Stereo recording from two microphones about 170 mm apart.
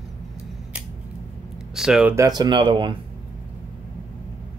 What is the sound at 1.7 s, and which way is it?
Speech, 5° right (ahead or behind).